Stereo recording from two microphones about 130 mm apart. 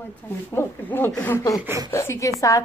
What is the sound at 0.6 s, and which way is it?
A woman's voice, 15° left (ahead or behind).